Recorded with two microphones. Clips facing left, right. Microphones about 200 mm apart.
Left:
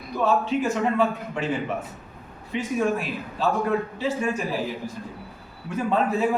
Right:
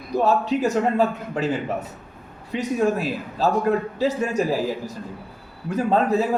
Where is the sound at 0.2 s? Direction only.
40° right (ahead or behind).